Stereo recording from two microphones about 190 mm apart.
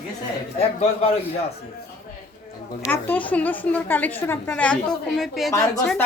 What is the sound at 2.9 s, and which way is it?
A woman's voice, 10° left (ahead or behind).